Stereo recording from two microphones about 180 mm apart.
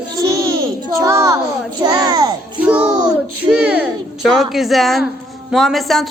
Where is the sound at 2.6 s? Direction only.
5° right (ahead or behind).